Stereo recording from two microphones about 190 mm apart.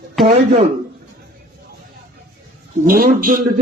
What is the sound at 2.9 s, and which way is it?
Speech, 50° right (ahead or behind).